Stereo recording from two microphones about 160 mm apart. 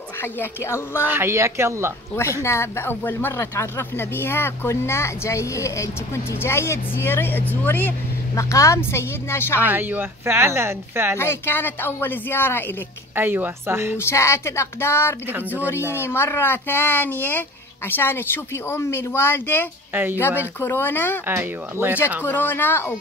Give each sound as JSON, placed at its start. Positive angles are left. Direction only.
{"t": 0.2, "sound": "speech", "side_deg": 15}
{"t": 1.0, "sound": "speech", "side_deg": -15}
{"t": 2.4, "sound": "speech", "side_deg": 15}
{"t": 9.7, "sound": "speech", "side_deg": -10}
{"t": 11.1, "sound": "speech", "side_deg": 15}
{"t": 13.1, "sound": "speech", "side_deg": -15}
{"t": 13.9, "sound": "speech", "side_deg": 15}
{"t": 19.9, "sound": "speech", "side_deg": -10}
{"t": 20.2, "sound": "speech", "side_deg": 15}
{"t": 21.3, "sound": "speech", "side_deg": -15}
{"t": 22.2, "sound": "speech", "side_deg": 10}